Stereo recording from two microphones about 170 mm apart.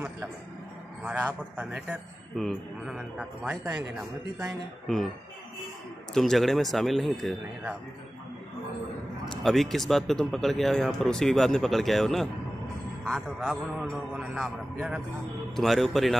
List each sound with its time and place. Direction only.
1.0 s speech: 10° right (ahead or behind)
6.1 s speech: centre (ahead or behind)
9.2 s speech: centre (ahead or behind)